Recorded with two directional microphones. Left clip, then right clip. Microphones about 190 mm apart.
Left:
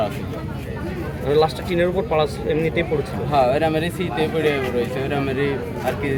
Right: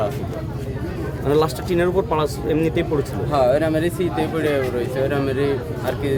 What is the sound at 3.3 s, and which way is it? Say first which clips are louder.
Speech: even; 15° right (ahead or behind).